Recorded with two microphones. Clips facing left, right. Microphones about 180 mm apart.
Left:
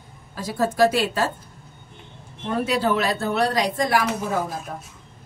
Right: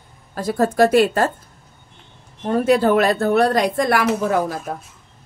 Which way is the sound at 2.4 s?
45° right (ahead or behind).